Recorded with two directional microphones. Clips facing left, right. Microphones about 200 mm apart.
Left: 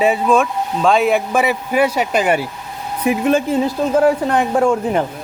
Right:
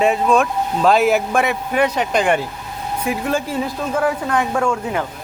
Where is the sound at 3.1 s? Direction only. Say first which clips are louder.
Left 7 dB; 20° left (ahead or behind).